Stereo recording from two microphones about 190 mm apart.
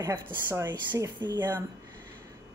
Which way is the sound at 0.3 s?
10° right (ahead or behind).